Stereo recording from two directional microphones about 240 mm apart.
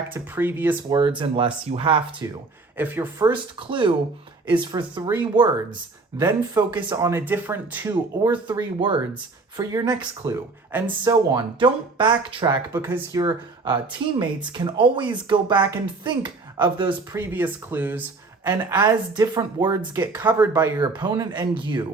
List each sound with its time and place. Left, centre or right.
0.1 s speech: centre
0.9 s speech: centre
3.6 s speech: right